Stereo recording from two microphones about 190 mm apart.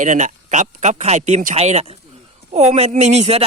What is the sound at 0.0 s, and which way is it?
A man's voice, 40° right (ahead or behind).